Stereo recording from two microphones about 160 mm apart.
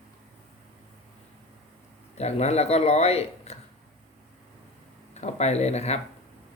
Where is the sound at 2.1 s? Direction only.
45° left (ahead or behind).